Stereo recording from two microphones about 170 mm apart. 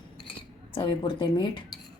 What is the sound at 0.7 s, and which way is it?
Speech, 30° left (ahead or behind).